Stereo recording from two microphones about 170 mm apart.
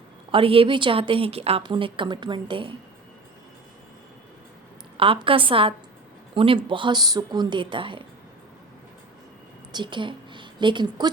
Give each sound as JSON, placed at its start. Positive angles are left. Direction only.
{"t": 0.3, "sound": "a woman's voice", "side_deg": -30}
{"t": 4.9, "sound": "a woman's voice", "side_deg": -30}
{"t": 9.7, "sound": "a woman's voice", "side_deg": -30}